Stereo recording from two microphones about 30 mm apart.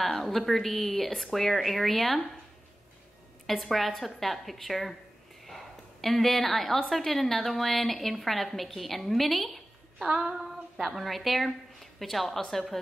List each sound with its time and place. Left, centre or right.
0.2 s a woman's voice: centre
3.4 s a woman's voice: centre
5.4 s a sound: centre
6.9 s a woman's voice: centre
10.0 s female singing: right
11.1 s a woman's voice: centre